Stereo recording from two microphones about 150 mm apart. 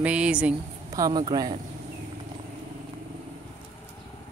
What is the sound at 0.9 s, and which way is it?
Speech, 25° right (ahead or behind).